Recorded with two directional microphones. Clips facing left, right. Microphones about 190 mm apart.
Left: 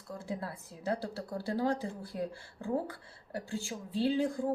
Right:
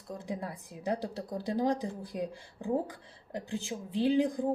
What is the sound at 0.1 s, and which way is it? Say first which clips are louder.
A woman's voice: right 1 dB; 15° right (ahead or behind).